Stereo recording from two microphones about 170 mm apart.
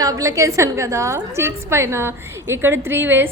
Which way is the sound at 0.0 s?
20° right (ahead or behind).